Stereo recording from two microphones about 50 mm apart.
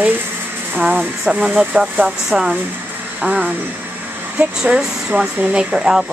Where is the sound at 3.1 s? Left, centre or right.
Right.